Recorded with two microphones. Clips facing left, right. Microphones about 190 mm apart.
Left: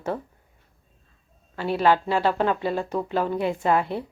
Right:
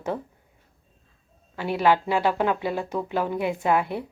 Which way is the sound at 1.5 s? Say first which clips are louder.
Left 1 dB; 15° right (ahead or behind).